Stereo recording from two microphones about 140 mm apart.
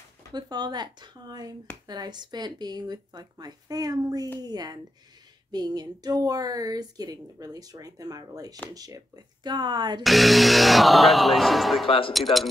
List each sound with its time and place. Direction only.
0.3 s a woman's voice: 30° right (ahead or behind)
10.0 s speech: centre (ahead or behind)